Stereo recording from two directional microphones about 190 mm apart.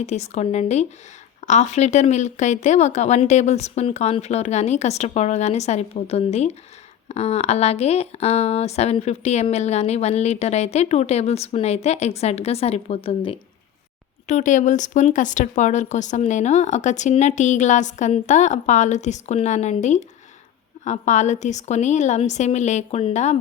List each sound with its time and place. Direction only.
0.0 s speech: 35° left (ahead or behind)